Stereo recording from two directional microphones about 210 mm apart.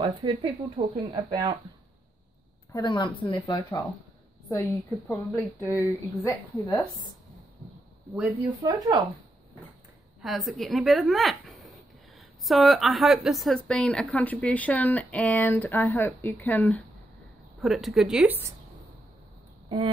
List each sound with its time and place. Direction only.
0.0 s speech: 25° right (ahead or behind)
2.7 s a woman's voice: 20° left (ahead or behind)
8.2 s speech: 10° right (ahead or behind)
10.2 s a woman's voice: centre (ahead or behind)